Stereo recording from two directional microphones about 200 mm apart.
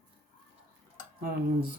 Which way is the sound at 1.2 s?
50° right (ahead or behind).